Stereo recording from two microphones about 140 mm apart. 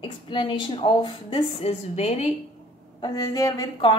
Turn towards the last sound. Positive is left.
turn(degrees=25)  # may be behind; listen again after turning